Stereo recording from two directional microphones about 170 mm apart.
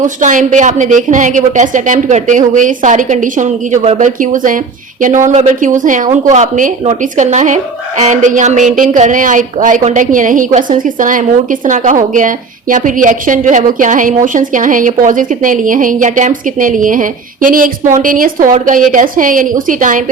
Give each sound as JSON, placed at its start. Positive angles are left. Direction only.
{"t": 0.0, "sound": "a woman's voice", "side_deg": -50}